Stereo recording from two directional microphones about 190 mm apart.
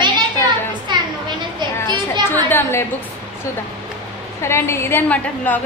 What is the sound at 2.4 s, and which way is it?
Speech, 10° left (ahead or behind).